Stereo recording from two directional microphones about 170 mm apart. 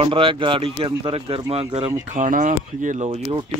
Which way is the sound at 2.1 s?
50° right (ahead or behind).